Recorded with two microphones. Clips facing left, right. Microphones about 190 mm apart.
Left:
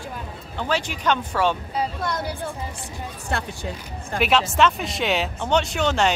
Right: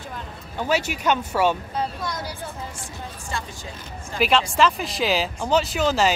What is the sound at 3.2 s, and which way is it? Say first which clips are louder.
Speech: left 6 dB; 65° left (ahead or behind).